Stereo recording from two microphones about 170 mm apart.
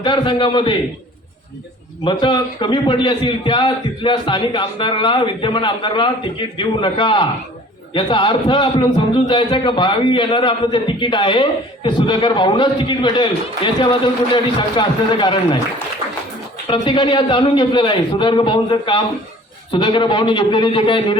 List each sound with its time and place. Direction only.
0.0 s a man's voice: 25° left (ahead or behind)
2.0 s a man's voice: 30° left (ahead or behind)
16.6 s a man's voice: 25° left (ahead or behind)